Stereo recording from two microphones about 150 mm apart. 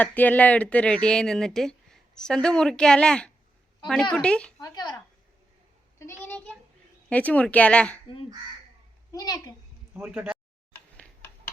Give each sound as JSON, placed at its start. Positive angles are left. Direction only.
{"t": 0.0, "sound": "speech", "side_deg": 10}
{"t": 4.6, "sound": "a child's voice", "side_deg": 25}
{"t": 6.0, "sound": "speech", "side_deg": 15}
{"t": 9.1, "sound": "a child's voice", "side_deg": 25}
{"t": 10.1, "sound": "speech", "side_deg": -5}
{"t": 10.7, "sound": "tick-tock", "side_deg": 10}